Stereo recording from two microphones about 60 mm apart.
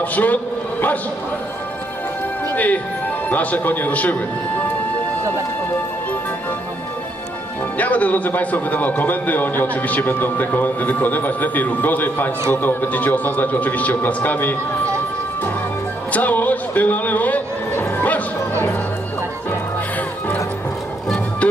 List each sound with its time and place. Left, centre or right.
0.0 s a man's voice: left
2.5 s a man's voice: left
7.7 s a man's voice: left
16.1 s music: left